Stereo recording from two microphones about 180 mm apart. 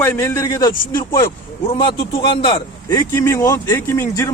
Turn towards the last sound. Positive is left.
turn(degrees=15)  # may be behind; listen again after turning